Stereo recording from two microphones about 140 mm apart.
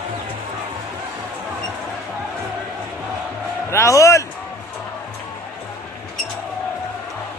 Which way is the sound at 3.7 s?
20° left (ahead or behind).